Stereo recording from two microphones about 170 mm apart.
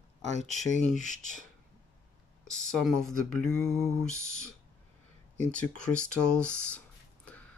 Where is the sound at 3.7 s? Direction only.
15° right (ahead or behind).